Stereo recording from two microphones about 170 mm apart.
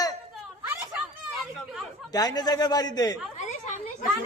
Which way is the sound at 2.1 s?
25° left (ahead or behind).